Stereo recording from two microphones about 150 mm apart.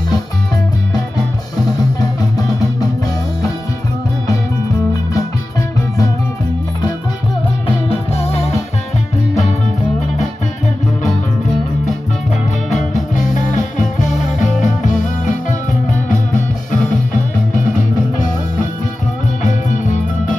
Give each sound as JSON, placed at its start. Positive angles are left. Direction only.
{"t": 7.6, "sound": "music", "side_deg": 40}
{"t": 12.6, "sound": "music", "side_deg": 55}